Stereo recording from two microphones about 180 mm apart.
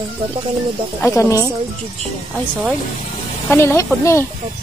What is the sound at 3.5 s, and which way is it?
Speech, 15° left (ahead or behind).